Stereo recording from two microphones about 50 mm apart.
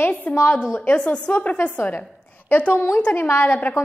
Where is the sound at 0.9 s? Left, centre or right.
Left.